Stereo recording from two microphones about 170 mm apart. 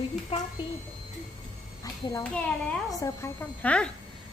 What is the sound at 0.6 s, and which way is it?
Speech, 30° left (ahead or behind).